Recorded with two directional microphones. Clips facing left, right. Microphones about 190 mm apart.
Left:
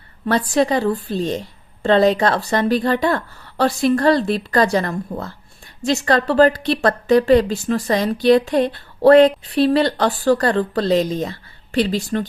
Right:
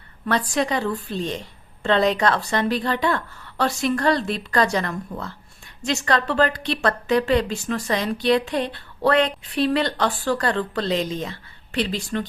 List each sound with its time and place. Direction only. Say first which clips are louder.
0.3 s a woman's voice: left 5 dB; 35° left (ahead or behind)